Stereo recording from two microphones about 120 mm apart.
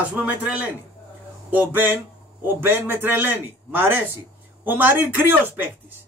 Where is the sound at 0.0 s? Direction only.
10° right (ahead or behind).